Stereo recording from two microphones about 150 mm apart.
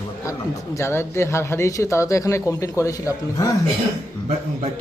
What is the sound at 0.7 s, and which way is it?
Speech, 15° left (ahead or behind).